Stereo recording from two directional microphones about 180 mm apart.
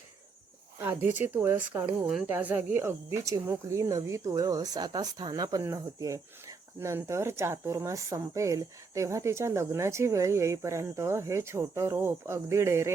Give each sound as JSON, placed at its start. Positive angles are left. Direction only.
{"t": 0.8, "sound": "speech", "side_deg": -10}